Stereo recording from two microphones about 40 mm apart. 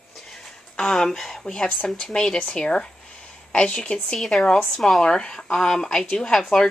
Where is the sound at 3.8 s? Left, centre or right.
Left; by 5.0 s centre.